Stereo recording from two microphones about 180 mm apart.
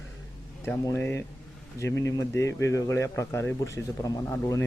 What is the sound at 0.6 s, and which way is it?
Speech, 15° left (ahead or behind).